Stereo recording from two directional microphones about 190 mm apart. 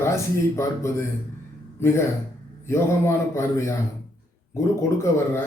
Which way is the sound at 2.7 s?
15° left (ahead or behind).